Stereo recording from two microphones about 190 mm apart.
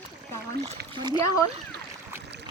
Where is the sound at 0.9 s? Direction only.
25° right (ahead or behind).